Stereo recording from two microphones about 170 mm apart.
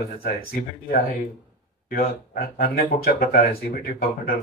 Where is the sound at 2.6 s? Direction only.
60° left (ahead or behind).